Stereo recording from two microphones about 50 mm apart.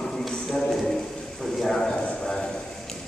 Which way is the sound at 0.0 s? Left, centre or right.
Centre.